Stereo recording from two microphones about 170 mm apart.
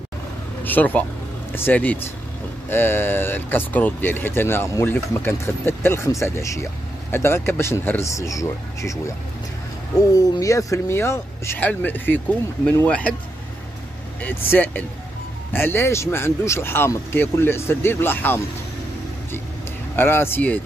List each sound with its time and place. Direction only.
0.7 s speech: 10° left (ahead or behind)
9.9 s speech: 20° left (ahead or behind)
14.5 s speech: 10° left (ahead or behind)
20.0 s speech: 15° left (ahead or behind)